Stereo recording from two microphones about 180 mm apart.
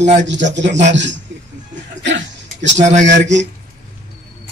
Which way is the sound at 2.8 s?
40° right (ahead or behind).